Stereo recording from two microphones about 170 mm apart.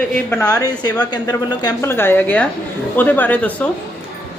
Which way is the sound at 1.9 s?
15° left (ahead or behind).